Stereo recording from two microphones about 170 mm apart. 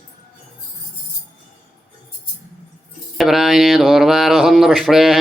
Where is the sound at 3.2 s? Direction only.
Centre (ahead or behind).